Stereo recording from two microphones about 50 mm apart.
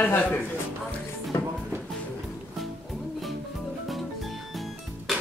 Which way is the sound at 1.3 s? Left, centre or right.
Left.